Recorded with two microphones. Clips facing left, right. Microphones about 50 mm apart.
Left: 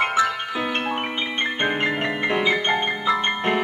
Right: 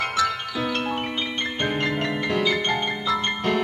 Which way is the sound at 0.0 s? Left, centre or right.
Left.